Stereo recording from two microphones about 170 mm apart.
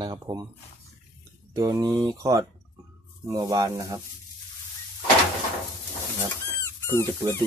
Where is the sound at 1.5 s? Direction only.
20° right (ahead or behind).